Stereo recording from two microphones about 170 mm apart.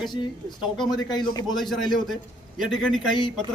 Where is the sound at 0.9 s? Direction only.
25° left (ahead or behind).